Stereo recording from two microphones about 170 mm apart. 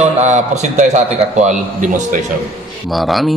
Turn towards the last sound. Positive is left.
turn(degrees=0)  # may be behind; listen again after turning